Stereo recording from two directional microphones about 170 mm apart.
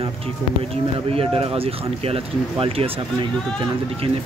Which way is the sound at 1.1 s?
35° right (ahead or behind).